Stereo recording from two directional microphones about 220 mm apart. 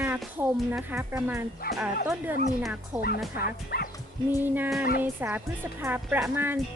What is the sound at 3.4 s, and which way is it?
Speech, 40° left (ahead or behind).